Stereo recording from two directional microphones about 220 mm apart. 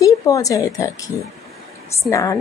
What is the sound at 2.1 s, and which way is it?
Speech, 15° left (ahead or behind).